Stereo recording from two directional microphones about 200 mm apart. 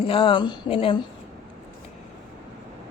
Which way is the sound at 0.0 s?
25° left (ahead or behind).